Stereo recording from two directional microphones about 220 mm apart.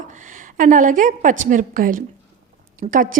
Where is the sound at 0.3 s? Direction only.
35° right (ahead or behind).